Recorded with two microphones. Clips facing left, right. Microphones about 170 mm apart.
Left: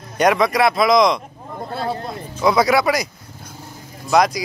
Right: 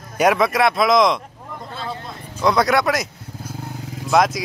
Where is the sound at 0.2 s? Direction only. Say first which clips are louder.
Left 1 dB; 5° right (ahead or behind).